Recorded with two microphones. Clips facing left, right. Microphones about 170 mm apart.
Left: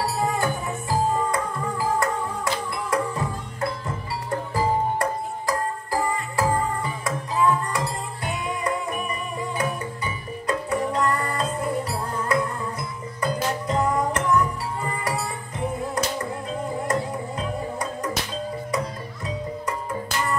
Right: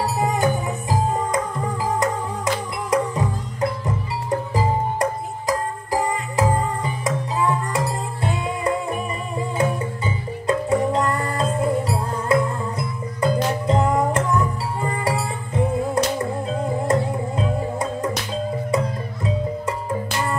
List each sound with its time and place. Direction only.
0.0 s music: 20° right (ahead or behind)
17.4 s music: 25° right (ahead or behind)